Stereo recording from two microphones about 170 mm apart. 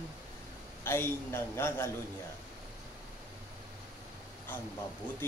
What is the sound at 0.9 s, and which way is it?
A man's voice, 15° left (ahead or behind).